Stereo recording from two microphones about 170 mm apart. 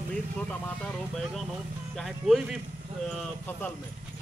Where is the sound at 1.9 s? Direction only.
Centre (ahead or behind).